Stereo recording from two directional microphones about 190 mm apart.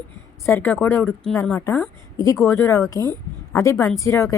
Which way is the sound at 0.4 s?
10° left (ahead or behind).